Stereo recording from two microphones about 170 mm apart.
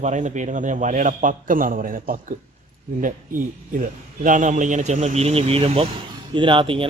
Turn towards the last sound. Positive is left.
turn(degrees=-30)  # may be behind; listen again after turning